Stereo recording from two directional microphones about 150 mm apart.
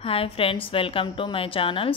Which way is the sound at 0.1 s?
40° left (ahead or behind).